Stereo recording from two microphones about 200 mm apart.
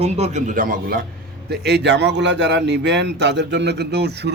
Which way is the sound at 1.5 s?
55° right (ahead or behind).